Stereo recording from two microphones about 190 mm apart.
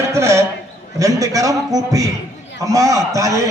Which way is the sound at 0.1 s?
15° right (ahead or behind).